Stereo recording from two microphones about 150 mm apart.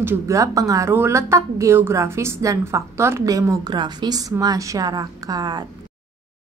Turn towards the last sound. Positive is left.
turn(degrees=-25)  # may be behind; listen again after turning